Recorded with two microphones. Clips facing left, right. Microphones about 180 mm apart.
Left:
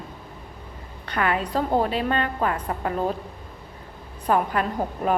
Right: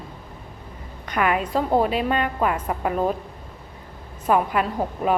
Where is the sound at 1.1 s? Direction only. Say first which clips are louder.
Right 2 dB; 15° right (ahead or behind).